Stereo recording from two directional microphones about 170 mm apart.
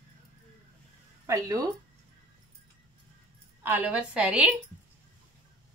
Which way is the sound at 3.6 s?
10° right (ahead or behind).